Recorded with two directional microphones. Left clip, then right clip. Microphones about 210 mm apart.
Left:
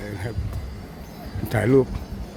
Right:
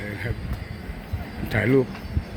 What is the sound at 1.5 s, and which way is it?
Speech, 10° left (ahead or behind).